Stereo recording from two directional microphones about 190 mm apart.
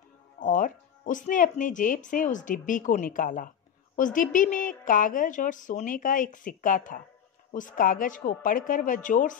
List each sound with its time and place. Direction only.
0.4 s speech: 45° left (ahead or behind)